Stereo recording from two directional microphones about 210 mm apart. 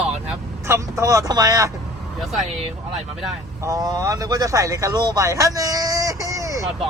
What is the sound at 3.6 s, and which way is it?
Speech, 15° right (ahead or behind).